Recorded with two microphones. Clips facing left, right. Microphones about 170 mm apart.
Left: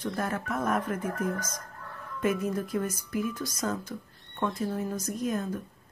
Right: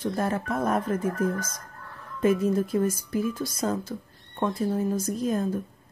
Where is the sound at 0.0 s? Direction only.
30° right (ahead or behind).